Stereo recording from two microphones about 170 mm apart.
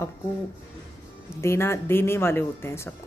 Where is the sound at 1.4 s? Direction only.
15° left (ahead or behind).